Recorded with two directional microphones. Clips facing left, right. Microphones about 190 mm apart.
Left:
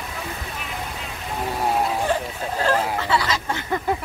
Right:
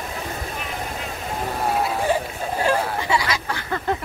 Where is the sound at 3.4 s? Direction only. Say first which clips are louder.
Left 2 dB; 20° left (ahead or behind).